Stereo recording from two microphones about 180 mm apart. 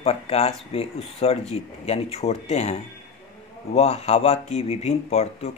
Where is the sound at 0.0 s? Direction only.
35° left (ahead or behind).